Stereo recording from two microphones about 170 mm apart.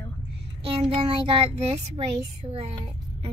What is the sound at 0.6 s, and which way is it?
A child's voice, 35° right (ahead or behind).